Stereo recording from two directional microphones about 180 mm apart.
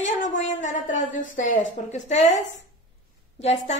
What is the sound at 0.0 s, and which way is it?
A woman's voice, 45° left (ahead or behind).